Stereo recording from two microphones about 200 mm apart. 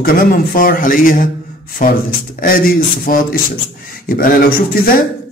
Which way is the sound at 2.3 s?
45° left (ahead or behind).